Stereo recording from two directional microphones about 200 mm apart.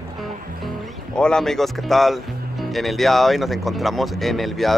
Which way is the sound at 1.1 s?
5° left (ahead or behind).